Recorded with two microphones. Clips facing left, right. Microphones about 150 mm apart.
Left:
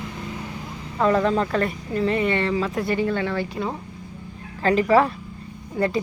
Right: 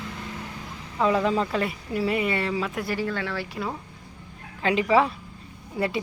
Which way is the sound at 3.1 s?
25° left (ahead or behind).